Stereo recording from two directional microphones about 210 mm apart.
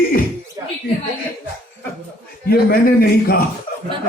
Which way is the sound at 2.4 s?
45° left (ahead or behind).